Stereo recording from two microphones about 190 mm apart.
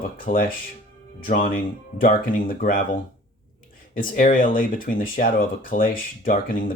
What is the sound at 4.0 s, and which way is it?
Speech, 45° left (ahead or behind).